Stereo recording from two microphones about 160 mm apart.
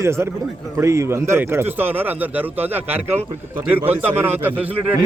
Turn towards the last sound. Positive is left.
turn(degrees=-10)  # may be behind; listen again after turning